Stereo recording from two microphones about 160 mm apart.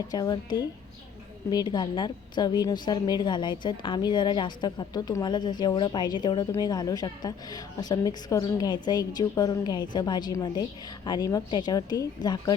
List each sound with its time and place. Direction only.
0.1 s a woman's voice: 25° left (ahead or behind)